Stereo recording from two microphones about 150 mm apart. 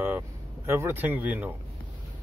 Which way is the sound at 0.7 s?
15° right (ahead or behind).